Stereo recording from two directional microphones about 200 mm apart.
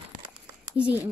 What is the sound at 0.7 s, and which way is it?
Speech, 5° right (ahead or behind).